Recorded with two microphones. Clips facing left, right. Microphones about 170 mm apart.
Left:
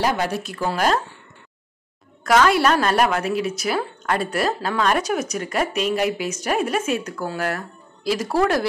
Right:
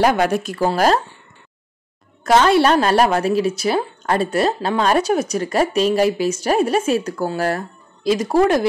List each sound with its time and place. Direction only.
0.0 s speech: 55° right (ahead or behind)
0.6 s a woman's voice: 35° right (ahead or behind)
2.2 s a woman's voice: 30° right (ahead or behind)